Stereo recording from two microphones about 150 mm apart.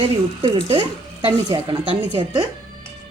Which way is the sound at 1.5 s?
35° right (ahead or behind).